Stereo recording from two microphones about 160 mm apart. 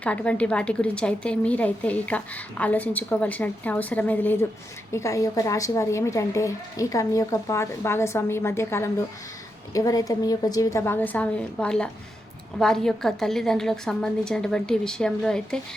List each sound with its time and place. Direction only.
0.0 s a woman's voice: 10° left (ahead or behind)